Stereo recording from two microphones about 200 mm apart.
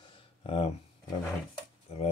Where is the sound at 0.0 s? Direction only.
25° left (ahead or behind).